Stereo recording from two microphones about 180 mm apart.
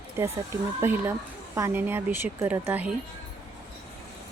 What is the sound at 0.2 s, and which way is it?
Speech, 15° right (ahead or behind).